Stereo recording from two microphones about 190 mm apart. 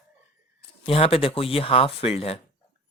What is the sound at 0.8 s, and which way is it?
Speech, 30° left (ahead or behind).